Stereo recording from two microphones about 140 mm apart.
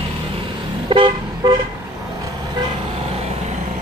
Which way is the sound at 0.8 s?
35° right (ahead or behind).